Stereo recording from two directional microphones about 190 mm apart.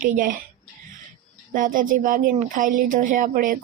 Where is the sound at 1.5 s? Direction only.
45° right (ahead or behind).